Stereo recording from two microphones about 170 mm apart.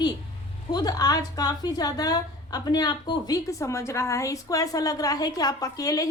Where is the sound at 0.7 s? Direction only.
20° left (ahead or behind).